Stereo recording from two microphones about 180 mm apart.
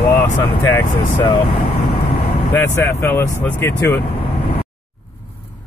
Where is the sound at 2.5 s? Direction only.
10° left (ahead or behind).